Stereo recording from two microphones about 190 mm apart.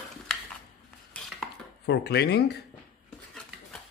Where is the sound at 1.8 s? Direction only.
60° left (ahead or behind).